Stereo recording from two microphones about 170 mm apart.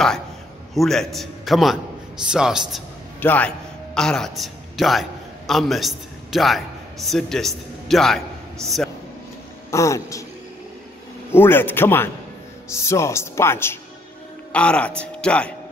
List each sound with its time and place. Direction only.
0.7 s a man's voice: centre (ahead or behind)
3.2 s a man's voice: 10° left (ahead or behind)
9.7 s speech: 20° left (ahead or behind)
11.3 s a man's voice: 10° left (ahead or behind)